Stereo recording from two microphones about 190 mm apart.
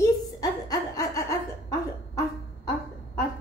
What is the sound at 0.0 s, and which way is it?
Chuckle, 20° left (ahead or behind).